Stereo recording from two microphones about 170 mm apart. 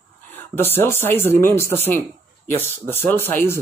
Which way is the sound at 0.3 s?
10° left (ahead or behind).